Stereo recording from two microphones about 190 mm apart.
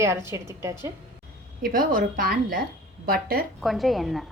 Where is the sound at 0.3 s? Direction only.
15° right (ahead or behind).